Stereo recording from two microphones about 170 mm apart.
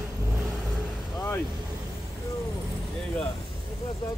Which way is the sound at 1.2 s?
15° left (ahead or behind).